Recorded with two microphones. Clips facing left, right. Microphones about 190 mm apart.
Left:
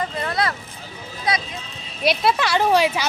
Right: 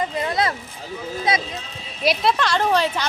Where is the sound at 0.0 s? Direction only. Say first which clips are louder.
Right 2 dB; 20° right (ahead or behind).